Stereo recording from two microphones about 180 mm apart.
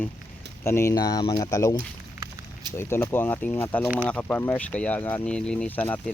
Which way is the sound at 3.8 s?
10° right (ahead or behind).